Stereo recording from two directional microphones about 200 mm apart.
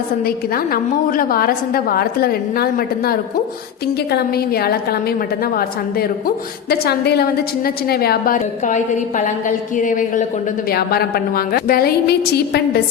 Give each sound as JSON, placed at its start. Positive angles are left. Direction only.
{"t": 0.2, "sound": "a woman's voice", "side_deg": 50}